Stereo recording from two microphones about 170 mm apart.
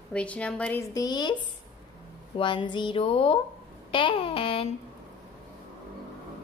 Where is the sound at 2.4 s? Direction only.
30° left (ahead or behind).